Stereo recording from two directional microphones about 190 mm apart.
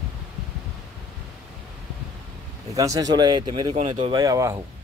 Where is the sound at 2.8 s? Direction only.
20° right (ahead or behind).